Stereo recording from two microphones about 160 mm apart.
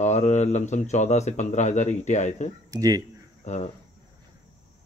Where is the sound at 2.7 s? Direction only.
20° right (ahead or behind).